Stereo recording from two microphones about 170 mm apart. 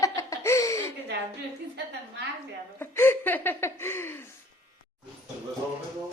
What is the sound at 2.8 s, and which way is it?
Speech, 15° left (ahead or behind).